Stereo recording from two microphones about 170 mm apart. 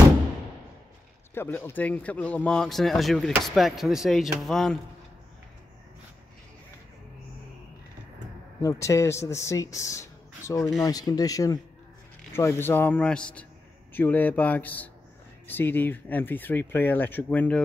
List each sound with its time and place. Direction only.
1.3 s speech: 15° left (ahead or behind)
8.6 s speech: 20° left (ahead or behind)